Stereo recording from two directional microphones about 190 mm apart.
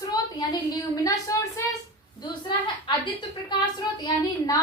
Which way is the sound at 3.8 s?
20° left (ahead or behind).